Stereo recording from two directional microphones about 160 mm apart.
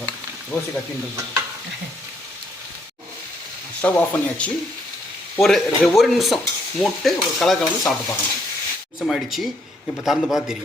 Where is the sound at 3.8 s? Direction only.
10° left (ahead or behind).